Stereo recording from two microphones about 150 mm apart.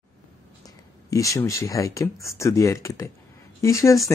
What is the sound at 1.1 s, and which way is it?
Speech, 20° left (ahead or behind).